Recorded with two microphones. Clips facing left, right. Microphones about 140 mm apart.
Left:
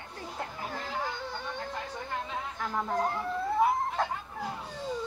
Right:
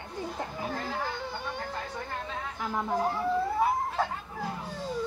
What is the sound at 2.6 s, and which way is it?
Speech, 5° right (ahead or behind).